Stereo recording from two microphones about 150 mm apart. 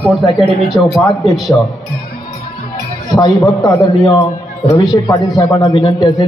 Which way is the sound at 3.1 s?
25° left (ahead or behind).